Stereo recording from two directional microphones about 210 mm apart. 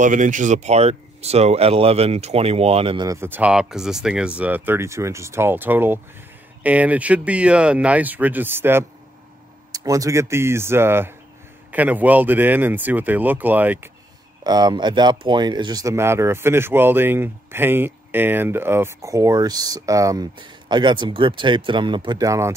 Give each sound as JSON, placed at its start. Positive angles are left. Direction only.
{"t": 0.0, "sound": "speech", "side_deg": -35}
{"t": 14.4, "sound": "speech", "side_deg": -20}